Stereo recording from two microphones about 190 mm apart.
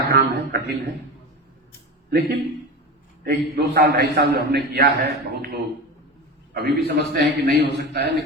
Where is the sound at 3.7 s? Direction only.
55° right (ahead or behind).